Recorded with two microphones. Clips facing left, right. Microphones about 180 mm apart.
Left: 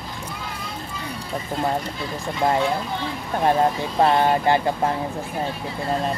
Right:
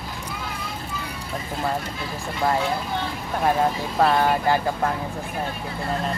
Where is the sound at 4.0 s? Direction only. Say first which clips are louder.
Left 2 dB; 25° left (ahead or behind).